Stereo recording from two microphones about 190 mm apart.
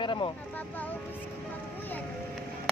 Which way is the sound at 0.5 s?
10° left (ahead or behind).